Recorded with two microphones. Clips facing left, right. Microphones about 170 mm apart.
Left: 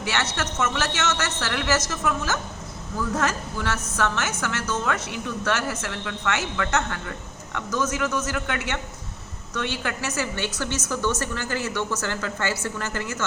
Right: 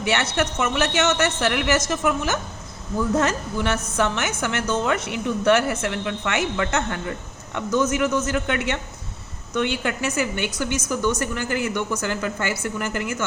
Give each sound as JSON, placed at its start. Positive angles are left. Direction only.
{"t": 0.0, "sound": "a woman's voice", "side_deg": -20}